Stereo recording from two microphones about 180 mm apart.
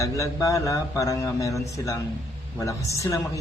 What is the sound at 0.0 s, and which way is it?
A man's voice, 15° left (ahead or behind).